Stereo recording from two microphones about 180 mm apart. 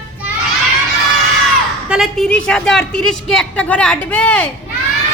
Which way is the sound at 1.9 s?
Centre (ahead or behind).